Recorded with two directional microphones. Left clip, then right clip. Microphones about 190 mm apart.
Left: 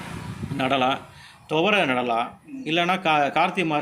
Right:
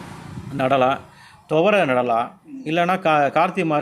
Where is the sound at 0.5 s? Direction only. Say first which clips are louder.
Right 4 dB; 50° right (ahead or behind).